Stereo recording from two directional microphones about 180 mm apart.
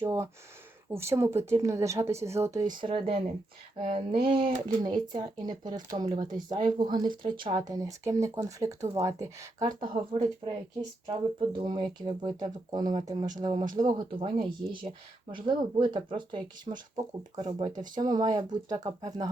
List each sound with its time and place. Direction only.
0.0 s speech: 20° right (ahead or behind)